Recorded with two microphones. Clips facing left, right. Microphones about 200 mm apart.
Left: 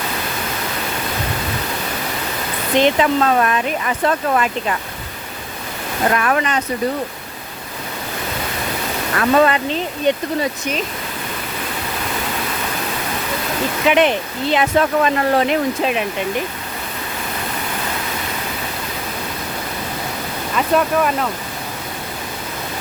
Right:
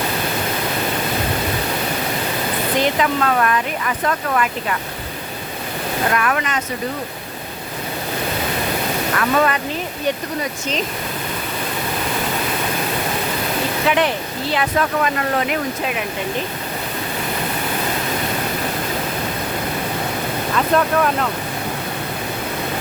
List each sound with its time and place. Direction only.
2.7 s speech: 25° left (ahead or behind)
6.1 s speech: 30° left (ahead or behind)
9.1 s speech: 30° left (ahead or behind)
13.8 s speech: 20° left (ahead or behind)
20.6 s speech: 5° left (ahead or behind)